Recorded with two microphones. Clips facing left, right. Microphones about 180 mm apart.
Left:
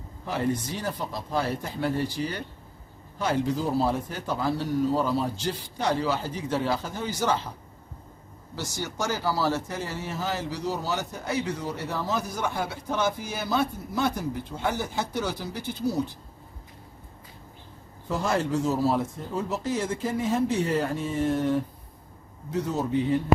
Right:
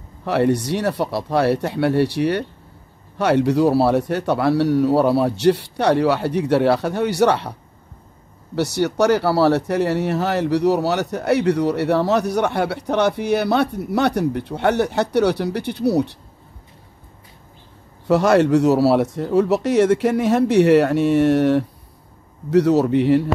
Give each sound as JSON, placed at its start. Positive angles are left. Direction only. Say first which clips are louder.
{"t": 0.2, "sound": "speech", "louder": "right 10 dB", "side_deg": -70}
{"t": 8.5, "sound": "speech", "louder": "right 14 dB", "side_deg": -70}
{"t": 18.0, "sound": "speech", "louder": "right 12 dB", "side_deg": -75}